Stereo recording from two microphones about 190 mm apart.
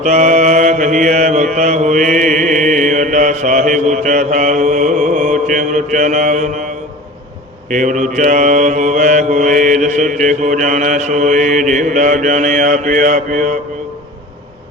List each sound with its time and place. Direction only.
0.0 s mantra: 40° right (ahead or behind)
7.7 s mantra: 40° right (ahead or behind)